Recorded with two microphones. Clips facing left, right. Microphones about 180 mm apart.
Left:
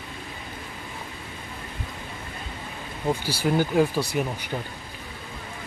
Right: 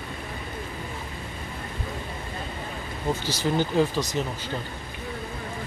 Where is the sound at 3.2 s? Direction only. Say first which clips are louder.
Left 1 dB; 10° left (ahead or behind).